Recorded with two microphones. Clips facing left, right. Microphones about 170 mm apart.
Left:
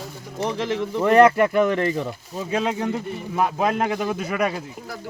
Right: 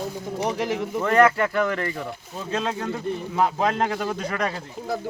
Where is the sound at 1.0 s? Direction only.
20° left (ahead or behind).